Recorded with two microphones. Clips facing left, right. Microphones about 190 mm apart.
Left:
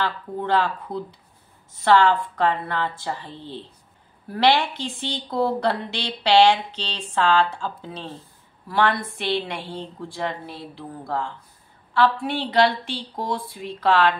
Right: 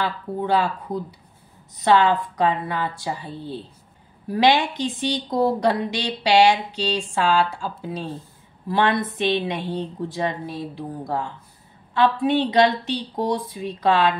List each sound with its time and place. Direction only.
0.0 s a woman's voice: 10° right (ahead or behind)